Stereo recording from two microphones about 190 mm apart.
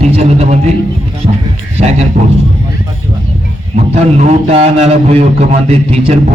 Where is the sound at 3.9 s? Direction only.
35° right (ahead or behind).